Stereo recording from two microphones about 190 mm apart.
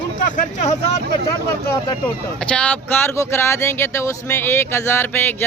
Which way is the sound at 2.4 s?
5° left (ahead or behind).